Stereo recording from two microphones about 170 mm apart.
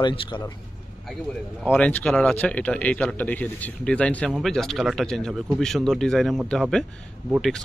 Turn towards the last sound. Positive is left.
turn(degrees=0)  # may be behind; listen again after turning